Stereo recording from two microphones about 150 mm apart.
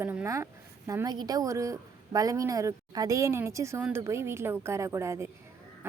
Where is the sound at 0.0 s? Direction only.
15° right (ahead or behind).